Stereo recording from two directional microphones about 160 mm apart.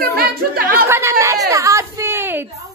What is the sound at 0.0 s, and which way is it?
Speech, 70° right (ahead or behind).